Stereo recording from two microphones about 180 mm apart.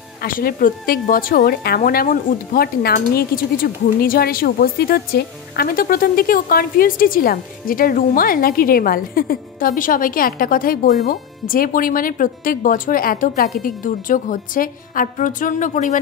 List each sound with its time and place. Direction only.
0.2 s a woman's voice: 55° left (ahead or behind)